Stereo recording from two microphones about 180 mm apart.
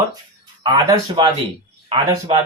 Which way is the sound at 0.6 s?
25° right (ahead or behind).